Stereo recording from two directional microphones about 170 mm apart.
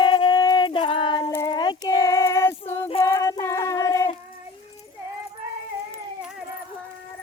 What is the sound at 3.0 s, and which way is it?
Child singing, 15° left (ahead or behind).